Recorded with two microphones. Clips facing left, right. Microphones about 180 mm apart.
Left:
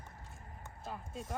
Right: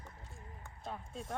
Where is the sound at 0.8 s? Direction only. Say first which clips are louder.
Even; centre (ahead or behind).